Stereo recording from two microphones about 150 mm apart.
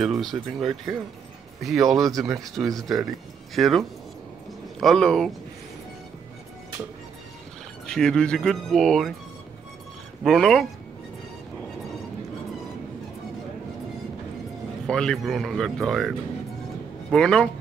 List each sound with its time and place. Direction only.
0.0 s speech: centre (ahead or behind)
2.0 s speech: 25° right (ahead or behind)
2.4 s speech: centre (ahead or behind)
7.8 s speech: 5° left (ahead or behind)
10.2 s speech: centre (ahead or behind)
14.9 s speech: 5° left (ahead or behind)